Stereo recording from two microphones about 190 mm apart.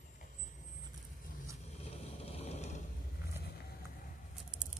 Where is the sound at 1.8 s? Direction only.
35° left (ahead or behind).